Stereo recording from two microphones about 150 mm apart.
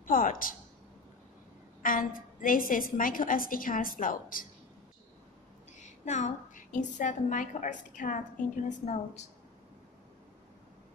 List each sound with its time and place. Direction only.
0.0 s a woman's voice: 65° left (ahead or behind)
1.8 s a woman's voice: 65° left (ahead or behind)
5.8 s a woman's voice: 55° left (ahead or behind)